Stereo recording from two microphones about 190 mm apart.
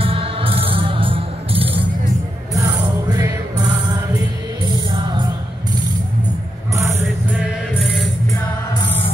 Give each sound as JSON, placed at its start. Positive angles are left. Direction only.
{"t": 0.0, "sound": "music", "side_deg": -30}
{"t": 2.5, "sound": "music", "side_deg": -15}
{"t": 7.2, "sound": "music", "side_deg": 0}